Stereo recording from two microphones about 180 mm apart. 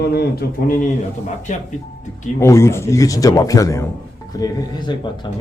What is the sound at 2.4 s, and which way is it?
Speech, 15° left (ahead or behind).